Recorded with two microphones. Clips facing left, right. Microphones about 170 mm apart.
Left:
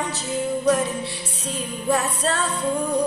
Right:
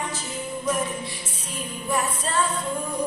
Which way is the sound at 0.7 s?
70° left (ahead or behind).